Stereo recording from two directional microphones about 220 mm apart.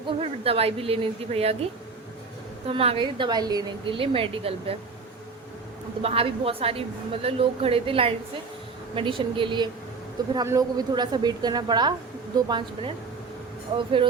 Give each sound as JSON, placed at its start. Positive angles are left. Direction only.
{"t": 0.2, "sound": "a woman's voice", "side_deg": -25}
{"t": 2.6, "sound": "a woman's voice", "side_deg": -25}
{"t": 6.0, "sound": "a woman's voice", "side_deg": -25}